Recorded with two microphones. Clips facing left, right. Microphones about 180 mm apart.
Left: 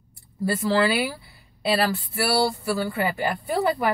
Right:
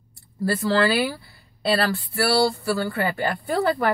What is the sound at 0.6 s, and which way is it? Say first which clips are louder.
Speech: right 1 dB; 15° left (ahead or behind).